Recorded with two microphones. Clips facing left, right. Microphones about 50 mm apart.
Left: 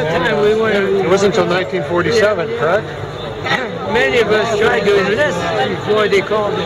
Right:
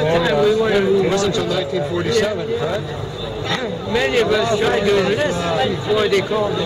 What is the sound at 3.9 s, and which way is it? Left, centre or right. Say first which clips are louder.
A man's voice: left 4 dB; left.